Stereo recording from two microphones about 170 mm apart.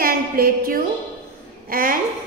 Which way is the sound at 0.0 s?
60° right (ahead or behind).